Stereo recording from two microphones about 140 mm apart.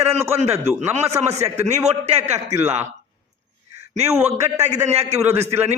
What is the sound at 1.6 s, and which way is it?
Speech, 50° right (ahead or behind).